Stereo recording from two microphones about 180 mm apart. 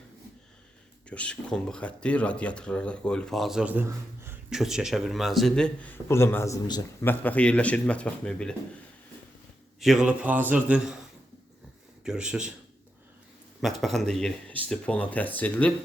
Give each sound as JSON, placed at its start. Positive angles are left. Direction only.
{"t": 1.1, "sound": "speech", "side_deg": 5}
{"t": 9.8, "sound": "a man's voice", "side_deg": 0}
{"t": 12.0, "sound": "speech", "side_deg": -5}
{"t": 13.8, "sound": "speech", "side_deg": 0}